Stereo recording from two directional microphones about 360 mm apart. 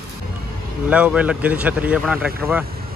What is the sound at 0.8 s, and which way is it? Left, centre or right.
Speech, centre.